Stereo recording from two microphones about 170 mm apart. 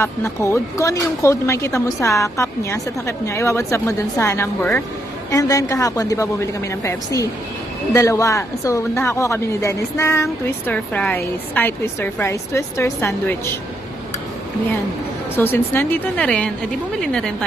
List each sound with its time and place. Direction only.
0.0 s a woman's voice: 15° left (ahead or behind)
15.3 s speech: 10° left (ahead or behind)